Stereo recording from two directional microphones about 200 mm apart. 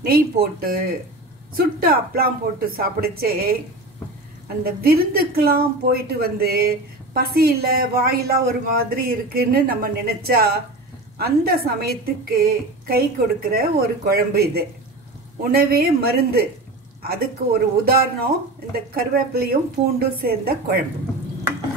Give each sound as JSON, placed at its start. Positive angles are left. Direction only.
{"t": 0.0, "sound": "a woman's voice", "side_deg": -50}
{"t": 4.6, "sound": "a woman's voice", "side_deg": -50}